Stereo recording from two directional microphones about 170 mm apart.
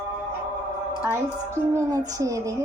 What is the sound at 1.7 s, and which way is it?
Speech, 20° right (ahead or behind).